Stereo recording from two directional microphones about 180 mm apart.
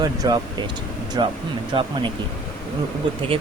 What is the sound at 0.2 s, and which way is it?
Speech, 20° right (ahead or behind).